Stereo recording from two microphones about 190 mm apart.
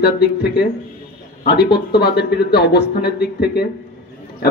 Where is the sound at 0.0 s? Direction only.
55° left (ahead or behind).